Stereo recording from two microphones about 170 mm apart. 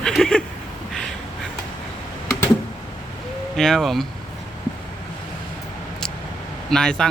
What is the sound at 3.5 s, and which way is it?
Speech, centre (ahead or behind).